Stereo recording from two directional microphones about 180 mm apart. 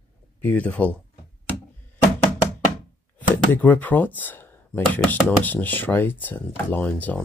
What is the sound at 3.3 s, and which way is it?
Speech, 10° left (ahead or behind).